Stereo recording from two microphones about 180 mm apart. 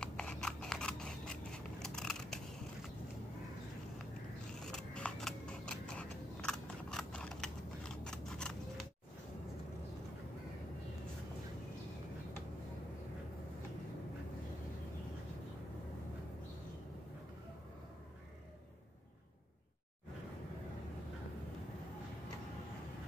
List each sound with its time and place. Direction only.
0.0 s scissors: 5° left (ahead or behind)
1.8 s a sound: 5° left (ahead or behind)
4.6 s scissors: 5° left (ahead or behind)